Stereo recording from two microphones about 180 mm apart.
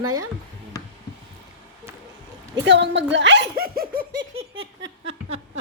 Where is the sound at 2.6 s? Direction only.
80° right; by 4.0 s 55° right (ahead or behind).